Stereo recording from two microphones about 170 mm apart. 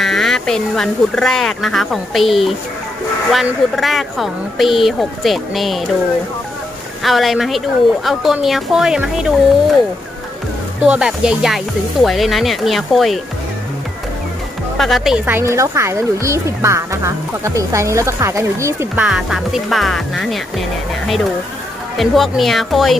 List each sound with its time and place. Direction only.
0.0 s a woman's voice: centre (ahead or behind)
7.0 s a woman's voice: centre (ahead or behind)
10.9 s a woman's voice: 5° right (ahead or behind)
14.8 s speech: centre (ahead or behind); by 19.0 s 15° right (ahead or behind)
19.0 s a woman's voice: centre (ahead or behind)
21.9 s a woman's voice: centre (ahead or behind)